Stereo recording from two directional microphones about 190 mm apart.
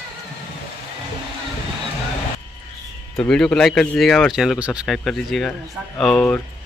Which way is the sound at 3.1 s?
5° left (ahead or behind).